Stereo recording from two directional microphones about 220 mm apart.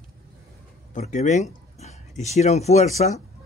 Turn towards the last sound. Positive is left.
turn(degrees=30)  # may be behind; listen again after turning